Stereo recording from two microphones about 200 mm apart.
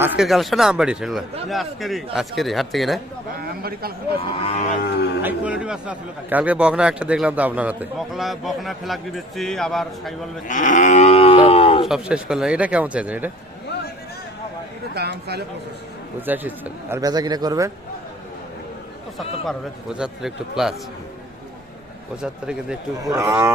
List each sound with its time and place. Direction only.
0.0 s a man's voice: centre (ahead or behind)
3.3 s speech: 50° right (ahead or behind)
4.4 s livestock: 30° left (ahead or behind)
5.2 s a man's voice: 5° right (ahead or behind)
10.5 s livestock: 40° left (ahead or behind)
11.9 s a man's voice: 5° right (ahead or behind)
14.9 s speech: 55° right (ahead or behind)
16.2 s speech: 10° right (ahead or behind)
19.5 s a man's voice: 5° right (ahead or behind)
22.2 s a man's voice: 5° right (ahead or behind)